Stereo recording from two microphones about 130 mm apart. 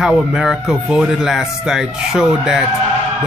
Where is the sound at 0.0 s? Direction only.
5° right (ahead or behind).